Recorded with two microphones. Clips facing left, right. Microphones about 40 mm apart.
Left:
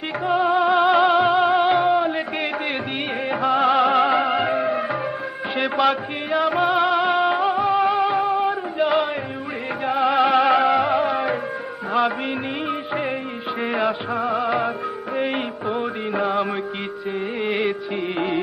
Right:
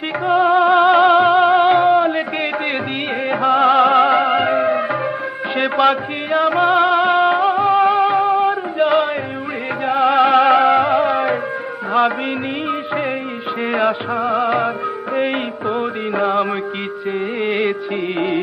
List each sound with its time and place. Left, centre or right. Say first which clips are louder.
0.2 s music: right 5 dB; centre
3.3 s music: right 5 dB; centre
4.6 s music of bollywood: right 5 dB; centre
5.6 s music: right 5 dB; centre
13.7 s music of bollywood: right 5 dB; centre
15.1 s music: right 4 dB; centre
17.4 s music of bollywood: right 3 dB; centre